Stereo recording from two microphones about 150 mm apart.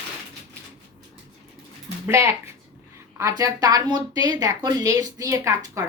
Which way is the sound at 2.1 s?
20° right (ahead or behind).